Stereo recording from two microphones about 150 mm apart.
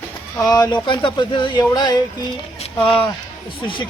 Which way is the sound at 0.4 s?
25° left (ahead or behind).